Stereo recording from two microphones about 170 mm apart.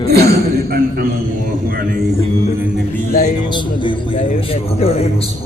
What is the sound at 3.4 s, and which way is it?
A man's voice, 25° left (ahead or behind).